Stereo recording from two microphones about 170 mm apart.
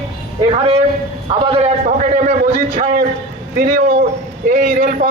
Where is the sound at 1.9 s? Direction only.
50° right (ahead or behind).